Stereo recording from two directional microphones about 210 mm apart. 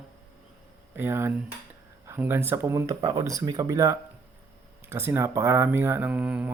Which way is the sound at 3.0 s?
30° right (ahead or behind).